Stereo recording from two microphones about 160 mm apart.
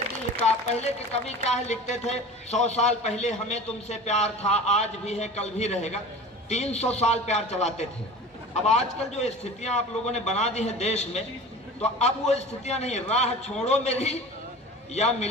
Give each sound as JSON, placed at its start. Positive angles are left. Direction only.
{"t": 0.4, "sound": "speech", "side_deg": 45}